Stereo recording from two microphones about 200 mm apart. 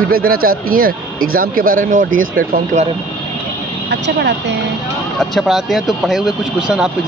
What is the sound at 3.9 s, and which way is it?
Speech, 60° right (ahead or behind).